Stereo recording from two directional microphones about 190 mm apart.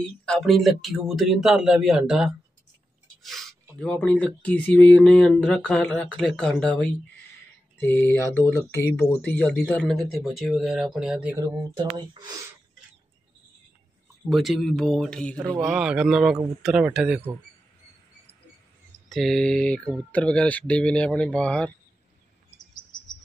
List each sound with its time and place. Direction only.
0.2 s speech: centre (ahead or behind)
11.8 s speech: 25° right (ahead or behind)
14.3 s speech: centre (ahead or behind)
19.0 s speech: centre (ahead or behind)
22.6 s cricket: 45° left (ahead or behind)